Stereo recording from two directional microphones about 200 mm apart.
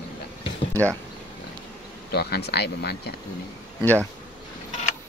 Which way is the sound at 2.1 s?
55° left (ahead or behind).